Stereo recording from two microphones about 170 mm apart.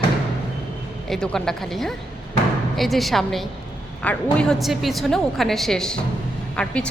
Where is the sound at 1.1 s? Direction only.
5° left (ahead or behind).